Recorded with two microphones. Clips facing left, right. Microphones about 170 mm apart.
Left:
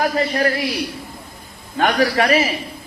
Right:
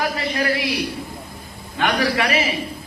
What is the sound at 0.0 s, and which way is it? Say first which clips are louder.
Speech: left 4 dB; 40° left (ahead or behind).